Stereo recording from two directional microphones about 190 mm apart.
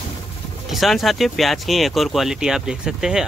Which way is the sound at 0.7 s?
Centre (ahead or behind).